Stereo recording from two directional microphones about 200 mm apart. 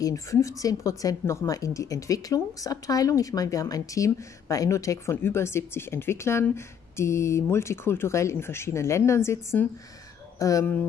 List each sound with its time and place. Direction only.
0.0 s a woman's voice: 15° left (ahead or behind)